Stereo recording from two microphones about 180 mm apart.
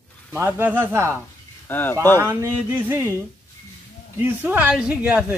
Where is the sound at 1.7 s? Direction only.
10° left (ahead or behind).